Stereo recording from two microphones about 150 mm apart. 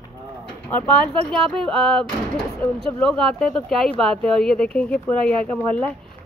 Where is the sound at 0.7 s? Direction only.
10° left (ahead or behind).